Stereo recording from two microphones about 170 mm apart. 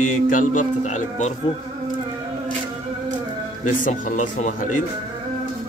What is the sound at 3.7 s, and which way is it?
A man's voice, 50° left (ahead or behind).